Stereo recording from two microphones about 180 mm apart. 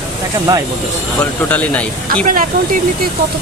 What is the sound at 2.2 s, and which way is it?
Speech, 50° right (ahead or behind).